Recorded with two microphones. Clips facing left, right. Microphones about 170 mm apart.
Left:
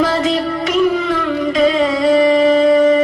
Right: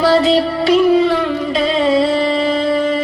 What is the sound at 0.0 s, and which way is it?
Music, 35° right (ahead or behind).